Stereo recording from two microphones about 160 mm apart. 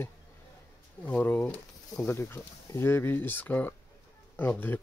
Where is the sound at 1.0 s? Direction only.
10° left (ahead or behind).